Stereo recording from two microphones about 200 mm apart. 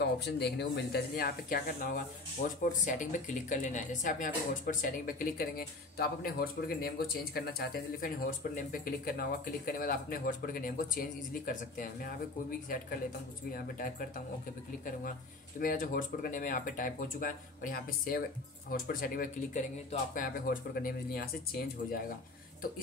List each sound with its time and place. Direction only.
0.0 s speech: 55° left (ahead or behind)
15.6 s speech: 40° left (ahead or behind)